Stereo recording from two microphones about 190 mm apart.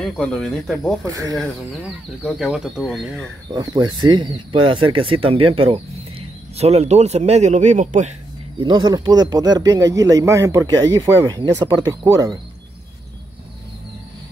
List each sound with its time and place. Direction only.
0.0 s speech: 5° left (ahead or behind)
1.0 s speech: 15° right (ahead or behind)
1.7 s speech: centre (ahead or behind)
3.5 s speech: 20° right (ahead or behind); by 8.1 s 40° right (ahead or behind)
8.5 s speech: 25° right (ahead or behind)